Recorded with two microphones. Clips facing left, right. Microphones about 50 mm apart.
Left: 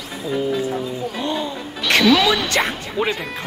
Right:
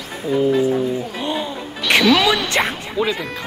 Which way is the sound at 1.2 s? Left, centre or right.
Centre.